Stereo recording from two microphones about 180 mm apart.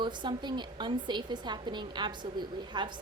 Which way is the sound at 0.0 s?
25° right (ahead or behind).